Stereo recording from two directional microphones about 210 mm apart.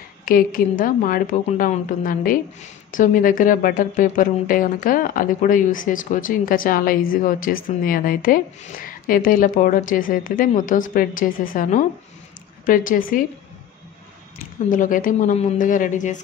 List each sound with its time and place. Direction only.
0.2 s speech: 40° left (ahead or behind)
14.7 s speech: 40° left (ahead or behind)